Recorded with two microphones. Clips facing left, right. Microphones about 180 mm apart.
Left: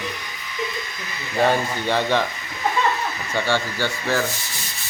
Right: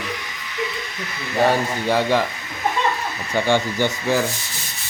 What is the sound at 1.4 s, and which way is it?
Speech, 5° right (ahead or behind).